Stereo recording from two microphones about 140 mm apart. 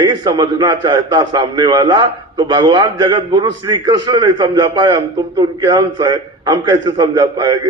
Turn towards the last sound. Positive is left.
turn(degrees=-30)  # may be behind; listen again after turning